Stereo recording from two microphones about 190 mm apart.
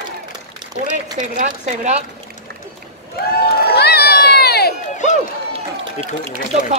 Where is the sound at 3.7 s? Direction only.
55° left (ahead or behind).